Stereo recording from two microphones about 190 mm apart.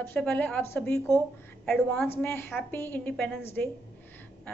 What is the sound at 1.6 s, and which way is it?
Speech, 5° left (ahead or behind).